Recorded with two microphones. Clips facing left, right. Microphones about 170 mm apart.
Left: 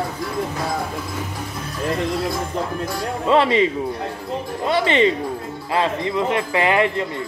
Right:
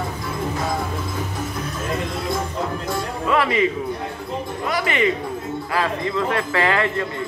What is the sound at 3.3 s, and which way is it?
Speech, 25° left (ahead or behind).